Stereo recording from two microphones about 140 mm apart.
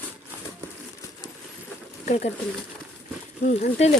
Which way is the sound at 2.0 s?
50° left (ahead or behind).